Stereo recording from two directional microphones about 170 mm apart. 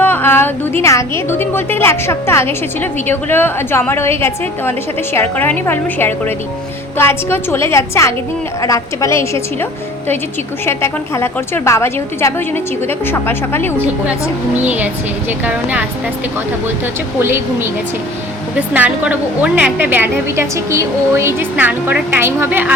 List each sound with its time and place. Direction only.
0.0 s a woman's voice: 10° left (ahead or behind)
10.7 s a woman's voice: 15° left (ahead or behind)
14.5 s a woman's voice: 10° right (ahead or behind)
17.2 s a woman's voice: 15° right (ahead or behind)
18.7 s a woman's voice: 10° right (ahead or behind)